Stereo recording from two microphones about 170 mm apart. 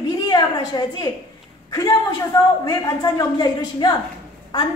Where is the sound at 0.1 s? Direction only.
20° left (ahead or behind).